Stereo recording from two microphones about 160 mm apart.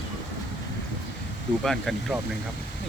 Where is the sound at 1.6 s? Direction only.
Centre (ahead or behind).